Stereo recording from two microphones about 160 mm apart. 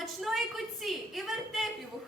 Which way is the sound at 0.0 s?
Centre (ahead or behind).